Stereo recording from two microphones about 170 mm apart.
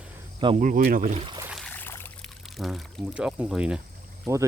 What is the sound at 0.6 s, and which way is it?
Speech, 50° right (ahead or behind).